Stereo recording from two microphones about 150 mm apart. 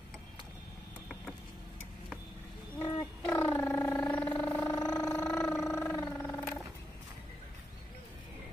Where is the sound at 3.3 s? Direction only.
15° left (ahead or behind).